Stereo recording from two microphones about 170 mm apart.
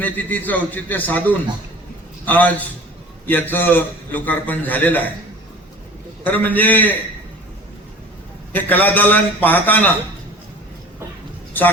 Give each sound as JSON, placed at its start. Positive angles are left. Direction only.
{"t": 0.0, "sound": "a man's voice", "side_deg": 10}
{"t": 6.2, "sound": "a man's voice", "side_deg": 10}
{"t": 8.5, "sound": "a man's voice", "side_deg": 10}